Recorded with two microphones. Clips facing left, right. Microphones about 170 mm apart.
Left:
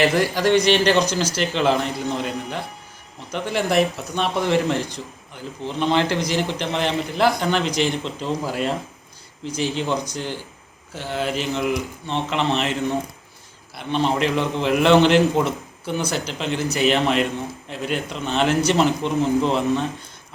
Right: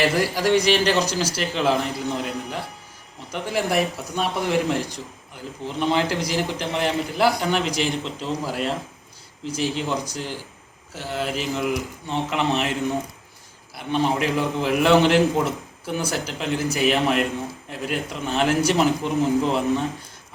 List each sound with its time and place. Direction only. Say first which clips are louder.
0.0 s a man's voice: left 2 dB; 5° right (ahead or behind)
13.7 s a man's voice: left 1 dB; 5° right (ahead or behind)